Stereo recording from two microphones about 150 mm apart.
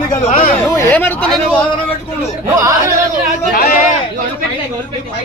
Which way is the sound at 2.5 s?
20° right (ahead or behind).